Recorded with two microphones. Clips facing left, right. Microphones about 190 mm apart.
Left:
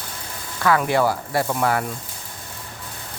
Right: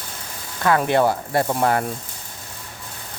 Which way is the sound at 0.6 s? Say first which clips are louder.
Right 1 dB; 25° right (ahead or behind).